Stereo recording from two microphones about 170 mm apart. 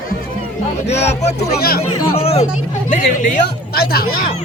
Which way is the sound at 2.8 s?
50° left (ahead or behind).